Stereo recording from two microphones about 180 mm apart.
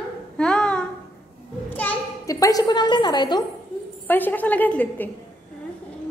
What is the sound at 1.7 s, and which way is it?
A child's voice, 10° left (ahead or behind).